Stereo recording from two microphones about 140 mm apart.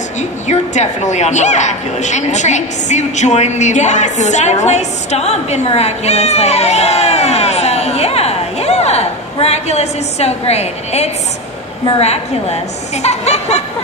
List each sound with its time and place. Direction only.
0.2 s a woman's voice: 55° left (ahead or behind)